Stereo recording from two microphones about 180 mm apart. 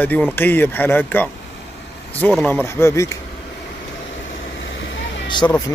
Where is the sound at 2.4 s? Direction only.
10° left (ahead or behind).